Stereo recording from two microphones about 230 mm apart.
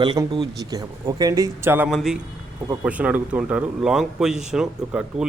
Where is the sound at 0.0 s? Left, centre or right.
Centre.